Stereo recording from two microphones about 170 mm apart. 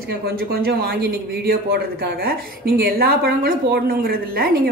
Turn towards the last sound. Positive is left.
turn(degrees=-60)  # may be behind; listen again after turning